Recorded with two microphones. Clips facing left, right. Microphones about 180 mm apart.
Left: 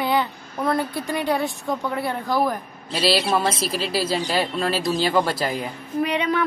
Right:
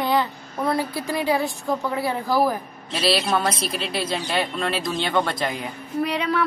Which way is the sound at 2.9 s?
30° left (ahead or behind).